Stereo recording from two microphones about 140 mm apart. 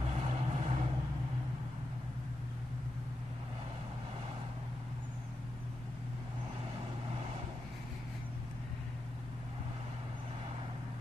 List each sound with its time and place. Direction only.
0.0 s vehicle: 50° right (ahead or behind)